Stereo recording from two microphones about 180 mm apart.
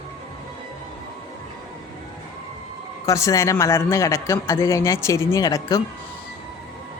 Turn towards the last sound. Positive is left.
turn(degrees=20)  # may be behind; listen again after turning